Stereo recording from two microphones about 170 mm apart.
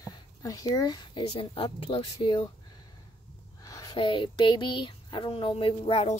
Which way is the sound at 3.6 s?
20° left (ahead or behind).